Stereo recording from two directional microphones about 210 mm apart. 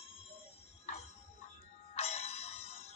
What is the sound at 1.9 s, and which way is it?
Music, 30° left (ahead or behind).